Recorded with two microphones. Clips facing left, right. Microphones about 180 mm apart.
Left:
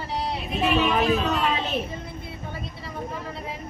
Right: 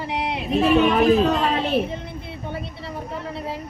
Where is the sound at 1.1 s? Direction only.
35° right (ahead or behind).